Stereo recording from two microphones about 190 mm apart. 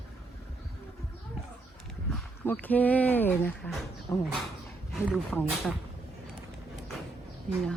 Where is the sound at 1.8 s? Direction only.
5° left (ahead or behind).